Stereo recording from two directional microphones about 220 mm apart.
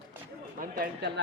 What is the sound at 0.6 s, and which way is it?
Speech, 50° right (ahead or behind).